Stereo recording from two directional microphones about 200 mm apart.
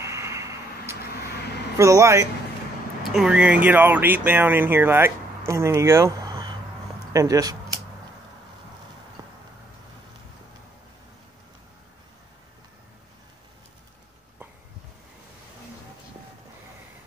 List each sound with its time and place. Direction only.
0.0 s vehicle: 15° right (ahead or behind)
1.8 s speech: 15° right (ahead or behind)
9.2 s a sound: 20° right (ahead or behind)